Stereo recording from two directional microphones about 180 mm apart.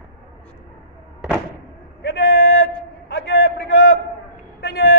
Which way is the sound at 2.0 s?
70° left (ahead or behind).